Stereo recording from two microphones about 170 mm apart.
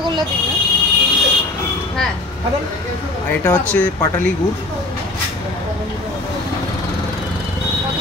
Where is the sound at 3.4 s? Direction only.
10° left (ahead or behind).